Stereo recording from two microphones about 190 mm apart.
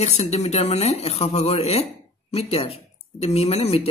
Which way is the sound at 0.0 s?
35° left (ahead or behind).